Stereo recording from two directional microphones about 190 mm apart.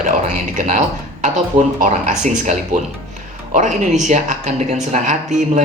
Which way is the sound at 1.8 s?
40° right (ahead or behind).